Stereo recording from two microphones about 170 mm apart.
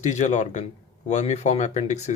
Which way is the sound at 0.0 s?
45° left (ahead or behind).